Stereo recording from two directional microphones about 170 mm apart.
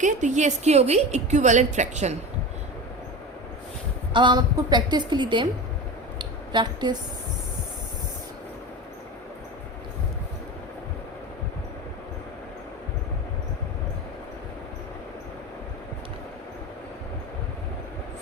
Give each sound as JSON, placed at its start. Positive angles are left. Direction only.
{"t": 0.0, "sound": "a woman's voice", "side_deg": -45}
{"t": 4.1, "sound": "a woman's voice", "side_deg": -25}
{"t": 6.1, "sound": "a sound", "side_deg": -25}